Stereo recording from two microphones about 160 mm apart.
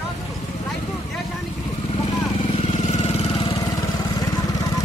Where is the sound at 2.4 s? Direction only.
40° left (ahead or behind).